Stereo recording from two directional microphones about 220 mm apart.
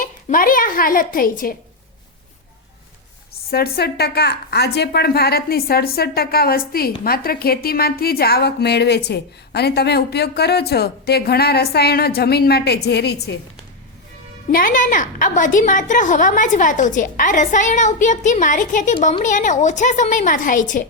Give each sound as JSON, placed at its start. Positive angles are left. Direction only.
{"t": 0.0, "sound": "speech", "side_deg": 40}
{"t": 3.5, "sound": "a woman's voice", "side_deg": 45}
{"t": 14.5, "sound": "a woman's voice", "side_deg": 40}